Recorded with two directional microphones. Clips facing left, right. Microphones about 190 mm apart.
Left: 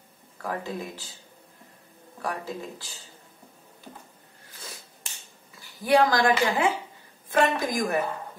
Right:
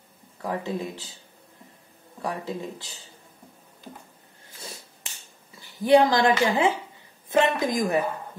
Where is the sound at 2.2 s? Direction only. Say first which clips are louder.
Right 2 dB; 20° right (ahead or behind).